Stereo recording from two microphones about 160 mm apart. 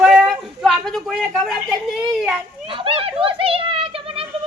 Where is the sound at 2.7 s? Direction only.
35° right (ahead or behind).